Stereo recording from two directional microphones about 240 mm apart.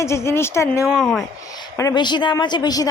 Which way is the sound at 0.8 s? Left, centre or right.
Centre.